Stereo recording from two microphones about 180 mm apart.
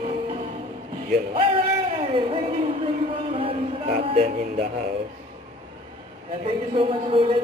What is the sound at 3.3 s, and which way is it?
Music, 30° right (ahead or behind).